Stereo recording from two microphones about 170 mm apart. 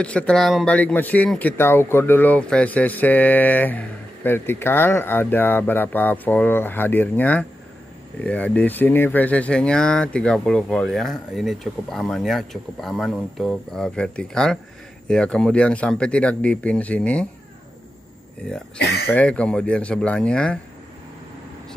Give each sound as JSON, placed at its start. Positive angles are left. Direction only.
{"t": 0.0, "sound": "speech", "side_deg": 5}
{"t": 18.8, "sound": "speech", "side_deg": 75}
{"t": 19.1, "sound": "speech", "side_deg": 5}